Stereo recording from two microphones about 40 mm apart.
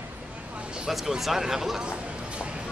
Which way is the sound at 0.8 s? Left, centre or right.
Centre.